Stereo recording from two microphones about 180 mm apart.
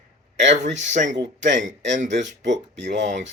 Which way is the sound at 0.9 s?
45° right (ahead or behind).